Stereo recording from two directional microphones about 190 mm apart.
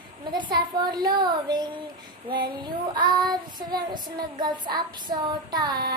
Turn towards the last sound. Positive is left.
turn(degrees=-20)  # may be behind; listen again after turning